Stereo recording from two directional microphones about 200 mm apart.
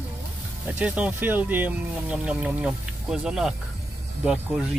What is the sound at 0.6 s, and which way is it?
Speech, 5° right (ahead or behind).